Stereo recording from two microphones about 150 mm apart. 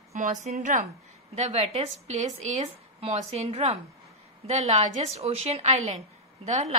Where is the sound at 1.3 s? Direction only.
45° right (ahead or behind).